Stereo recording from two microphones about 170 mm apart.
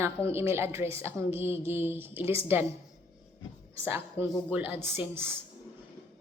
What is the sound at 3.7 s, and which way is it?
Speech, 15° right (ahead or behind).